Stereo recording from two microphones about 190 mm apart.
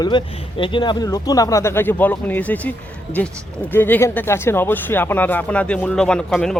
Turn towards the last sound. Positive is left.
turn(degrees=0)  # may be behind; listen again after turning